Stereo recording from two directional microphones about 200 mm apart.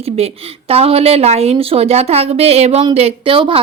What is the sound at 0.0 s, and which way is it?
Speech, 30° right (ahead or behind).